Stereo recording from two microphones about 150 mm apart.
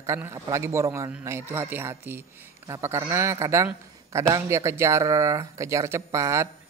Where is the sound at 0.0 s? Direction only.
20° right (ahead or behind).